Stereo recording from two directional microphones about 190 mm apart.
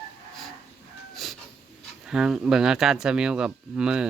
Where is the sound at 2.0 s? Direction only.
5° right (ahead or behind).